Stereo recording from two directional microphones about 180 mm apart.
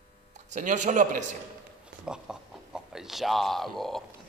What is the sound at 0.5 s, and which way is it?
Speech, 45° right (ahead or behind).